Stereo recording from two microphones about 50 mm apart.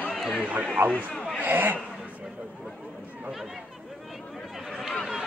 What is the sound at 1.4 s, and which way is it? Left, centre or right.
Speech, right.